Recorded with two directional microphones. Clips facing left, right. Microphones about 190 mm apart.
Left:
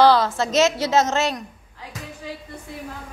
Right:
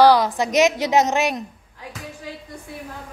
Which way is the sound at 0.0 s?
15° right (ahead or behind).